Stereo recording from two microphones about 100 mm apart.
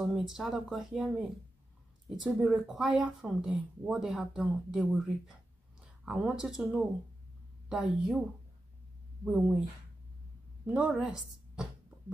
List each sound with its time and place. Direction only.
0.0 s a woman's voice: 5° right (ahead or behind)
9.2 s a woman's voice: 10° right (ahead or behind)
10.7 s speech: 5° right (ahead or behind)